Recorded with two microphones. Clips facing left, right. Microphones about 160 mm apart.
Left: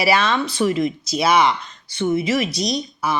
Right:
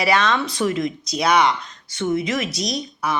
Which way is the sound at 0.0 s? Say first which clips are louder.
Left 1 dB; 5° left (ahead or behind).